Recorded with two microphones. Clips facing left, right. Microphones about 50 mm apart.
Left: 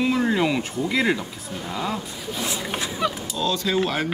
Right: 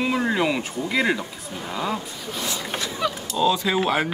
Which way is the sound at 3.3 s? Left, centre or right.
Centre.